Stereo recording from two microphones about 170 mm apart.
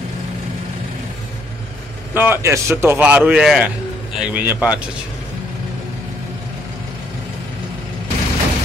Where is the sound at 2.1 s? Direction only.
15° right (ahead or behind).